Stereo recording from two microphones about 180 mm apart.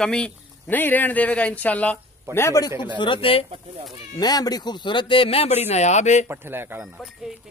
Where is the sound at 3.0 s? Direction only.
30° left (ahead or behind).